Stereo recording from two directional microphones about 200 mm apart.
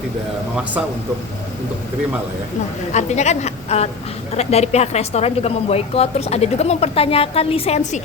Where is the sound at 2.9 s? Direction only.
35° left (ahead or behind).